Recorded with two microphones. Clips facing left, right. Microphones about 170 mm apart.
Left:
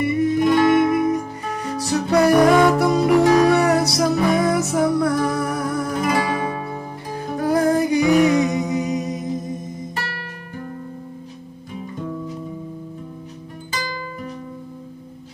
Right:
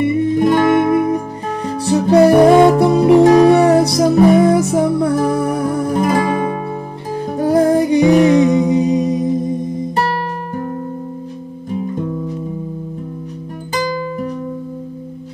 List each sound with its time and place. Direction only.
0.0 s music: 30° right (ahead or behind)
9.9 s music: 55° right (ahead or behind)